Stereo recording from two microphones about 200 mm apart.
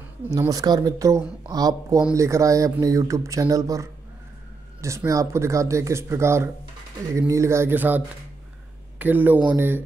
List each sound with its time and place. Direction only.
0.3 s speech: 15° right (ahead or behind)